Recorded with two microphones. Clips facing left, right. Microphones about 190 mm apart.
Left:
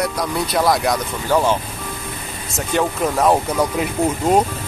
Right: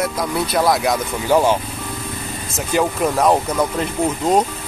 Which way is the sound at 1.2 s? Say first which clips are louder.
Right 2 dB; 15° right (ahead or behind).